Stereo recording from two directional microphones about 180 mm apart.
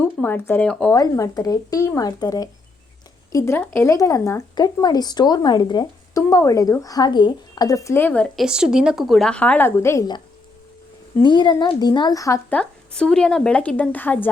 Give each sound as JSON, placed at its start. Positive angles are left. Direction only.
{"t": 0.0, "sound": "speech", "side_deg": 10}
{"t": 0.9, "sound": "speech", "side_deg": 20}
{"t": 8.4, "sound": "a woman's voice", "side_deg": -5}
{"t": 11.2, "sound": "speech", "side_deg": 25}
{"t": 12.5, "sound": "a woman's voice", "side_deg": 5}